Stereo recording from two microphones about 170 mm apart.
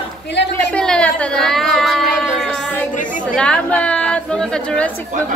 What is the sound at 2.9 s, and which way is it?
Speech, 50° left (ahead or behind).